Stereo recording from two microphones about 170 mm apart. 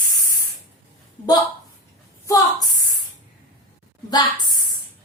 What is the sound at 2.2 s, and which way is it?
Speech, 20° left (ahead or behind).